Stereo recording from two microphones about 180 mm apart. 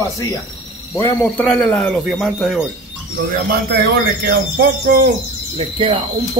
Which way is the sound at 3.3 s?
55° right (ahead or behind).